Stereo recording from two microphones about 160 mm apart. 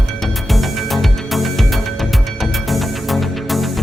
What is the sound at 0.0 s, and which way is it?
Music, centre (ahead or behind).